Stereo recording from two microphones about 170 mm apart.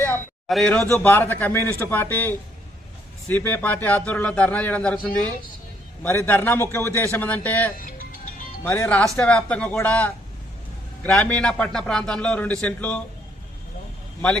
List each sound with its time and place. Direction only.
0.0 s a sound: 5° left (ahead or behind)
0.9 s a man's voice: 10° left (ahead or behind)
7.9 s music: 50° left (ahead or behind)
8.6 s a man's voice: 10° left (ahead or behind)